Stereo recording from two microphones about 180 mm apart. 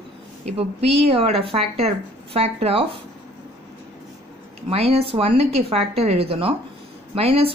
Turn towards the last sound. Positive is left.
turn(degrees=-35)  # may be behind; listen again after turning